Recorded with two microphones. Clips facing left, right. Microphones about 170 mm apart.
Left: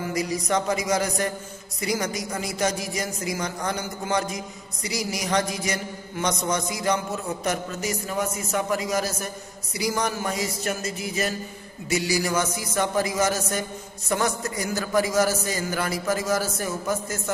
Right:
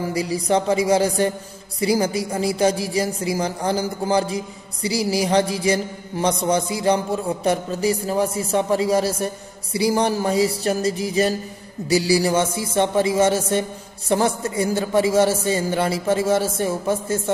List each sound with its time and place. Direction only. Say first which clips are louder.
0.1 s a man's voice: right 4 dB; 30° right (ahead or behind)
1.8 s mantra: right 7 dB; 30° right (ahead or behind)
11.9 s a man's voice: right 6 dB; 30° right (ahead or behind)